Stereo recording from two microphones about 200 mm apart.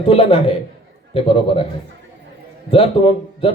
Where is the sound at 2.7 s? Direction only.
30° left (ahead or behind).